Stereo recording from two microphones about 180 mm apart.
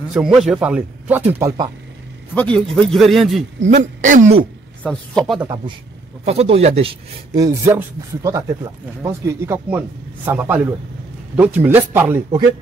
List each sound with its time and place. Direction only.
0.1 s a man's voice: 5° right (ahead or behind)
2.3 s a man's voice: 5° left (ahead or behind)
3.6 s speech: 45° right (ahead or behind)
4.8 s a man's voice: centre (ahead or behind)
6.2 s speech: 35° right (ahead or behind)
7.3 s speech: 15° right (ahead or behind)